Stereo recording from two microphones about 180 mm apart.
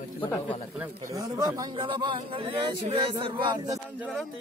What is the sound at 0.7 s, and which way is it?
Speech, 15° right (ahead or behind).